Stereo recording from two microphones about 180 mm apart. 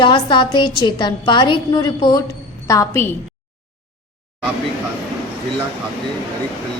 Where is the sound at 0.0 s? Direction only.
25° left (ahead or behind).